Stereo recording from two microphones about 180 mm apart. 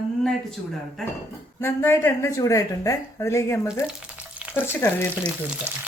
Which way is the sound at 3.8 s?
5° right (ahead or behind).